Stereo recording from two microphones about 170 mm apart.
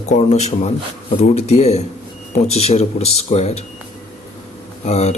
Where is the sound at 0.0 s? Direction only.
40° left (ahead or behind).